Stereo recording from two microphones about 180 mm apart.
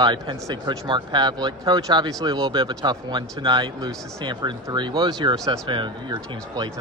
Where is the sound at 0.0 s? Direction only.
25° right (ahead or behind).